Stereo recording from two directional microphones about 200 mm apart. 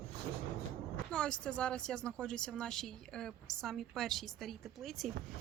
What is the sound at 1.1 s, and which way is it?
Speech, 5° left (ahead or behind).